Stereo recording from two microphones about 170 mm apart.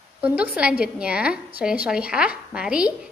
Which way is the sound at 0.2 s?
10° right (ahead or behind).